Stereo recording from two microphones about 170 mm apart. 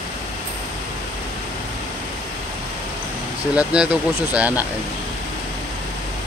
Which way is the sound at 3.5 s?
5° right (ahead or behind).